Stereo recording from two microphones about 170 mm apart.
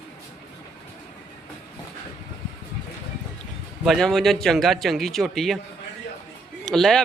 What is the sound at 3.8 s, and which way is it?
A man's voice, centre (ahead or behind).